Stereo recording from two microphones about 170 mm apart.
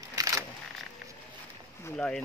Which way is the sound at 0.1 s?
20° right (ahead or behind).